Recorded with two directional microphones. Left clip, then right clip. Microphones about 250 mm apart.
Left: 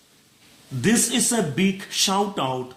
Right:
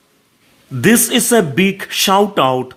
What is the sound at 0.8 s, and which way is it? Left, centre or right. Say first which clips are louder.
Speech: right 9 dB; right.